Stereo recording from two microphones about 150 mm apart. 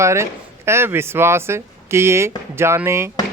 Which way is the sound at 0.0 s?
20° right (ahead or behind).